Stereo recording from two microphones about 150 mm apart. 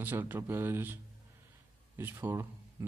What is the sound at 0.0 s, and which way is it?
Speech, 15° right (ahead or behind).